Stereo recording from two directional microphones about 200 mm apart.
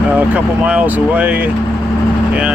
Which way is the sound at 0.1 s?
10° right (ahead or behind).